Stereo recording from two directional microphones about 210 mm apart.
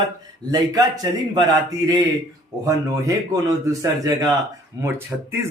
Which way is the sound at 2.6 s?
15° right (ahead or behind).